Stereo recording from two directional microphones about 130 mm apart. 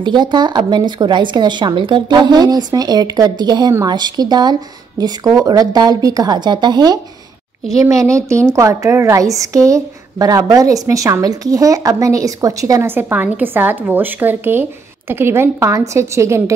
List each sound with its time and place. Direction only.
0.0 s a woman's voice: 35° right (ahead or behind)